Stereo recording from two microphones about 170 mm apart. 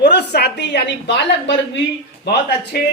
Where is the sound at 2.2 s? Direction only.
75° left (ahead or behind).